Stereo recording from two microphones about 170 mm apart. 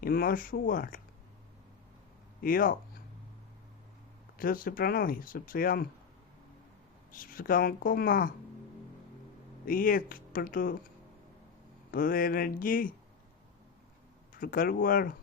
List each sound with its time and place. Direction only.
0.0 s speech: 55° left (ahead or behind)
2.4 s speech: 55° left (ahead or behind)
4.4 s speech: 55° left (ahead or behind)
7.1 s speech: 55° left (ahead or behind)
9.6 s speech: 55° left (ahead or behind)
11.9 s speech: 55° left (ahead or behind)
14.3 s speech: 55° left (ahead or behind)